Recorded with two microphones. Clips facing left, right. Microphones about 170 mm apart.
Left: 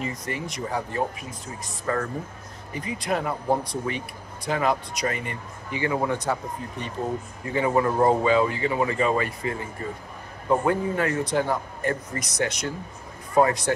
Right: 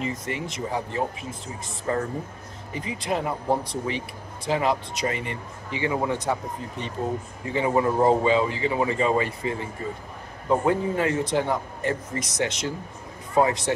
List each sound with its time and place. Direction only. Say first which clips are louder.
0.0 s speech: right 1 dB; 25° right (ahead or behind)
7.5 s speech: even; 20° right (ahead or behind)
10.6 s speech: right 1 dB; 25° right (ahead or behind)